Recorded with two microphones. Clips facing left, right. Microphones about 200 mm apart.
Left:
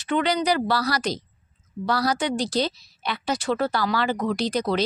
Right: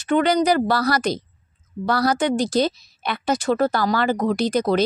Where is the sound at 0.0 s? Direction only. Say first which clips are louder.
Right 5 dB; 45° right (ahead or behind).